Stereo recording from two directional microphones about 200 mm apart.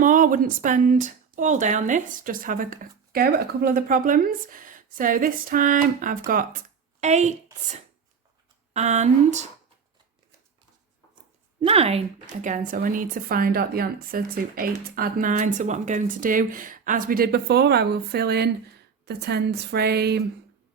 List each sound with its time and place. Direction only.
0.0 s a woman's voice: 40° right (ahead or behind)
8.7 s speech: 35° right (ahead or behind)
11.6 s a woman's voice: 30° right (ahead or behind); by 20.2 s 55° right (ahead or behind)